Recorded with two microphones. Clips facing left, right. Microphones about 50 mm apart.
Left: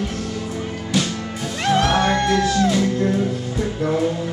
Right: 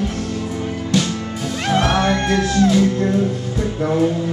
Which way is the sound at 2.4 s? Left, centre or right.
Centre.